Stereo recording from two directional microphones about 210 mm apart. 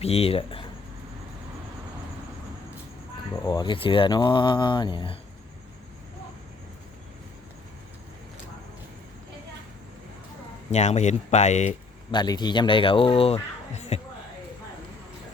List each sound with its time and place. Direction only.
0.0 s speech: 30° left (ahead or behind)
3.4 s speech: 20° left (ahead or behind)
10.7 s speech: 35° left (ahead or behind)
12.1 s speech: 20° left (ahead or behind)